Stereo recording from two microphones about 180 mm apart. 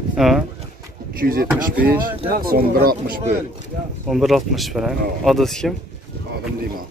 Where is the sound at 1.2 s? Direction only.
55° right (ahead or behind).